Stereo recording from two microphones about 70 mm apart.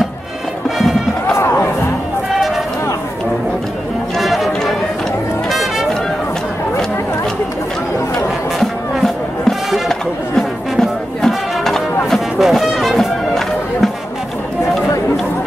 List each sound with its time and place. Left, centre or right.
0.7 s music: centre
1.3 s music: left
4.2 s music: centre
5.5 s music: centre
8.5 s music: centre